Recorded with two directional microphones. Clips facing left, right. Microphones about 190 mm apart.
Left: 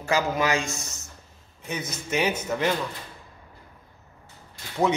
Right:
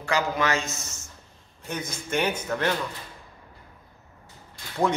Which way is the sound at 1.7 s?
5° left (ahead or behind).